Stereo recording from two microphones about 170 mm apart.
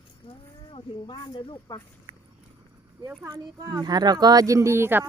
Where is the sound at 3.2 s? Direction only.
15° right (ahead or behind).